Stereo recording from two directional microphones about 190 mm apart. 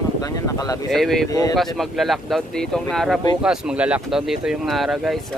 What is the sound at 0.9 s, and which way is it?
A man's voice, centre (ahead or behind).